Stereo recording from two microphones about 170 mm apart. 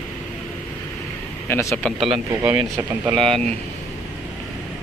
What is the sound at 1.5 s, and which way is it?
Speech, 15° left (ahead or behind).